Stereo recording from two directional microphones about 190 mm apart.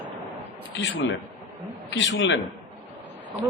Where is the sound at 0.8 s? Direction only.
70° left (ahead or behind).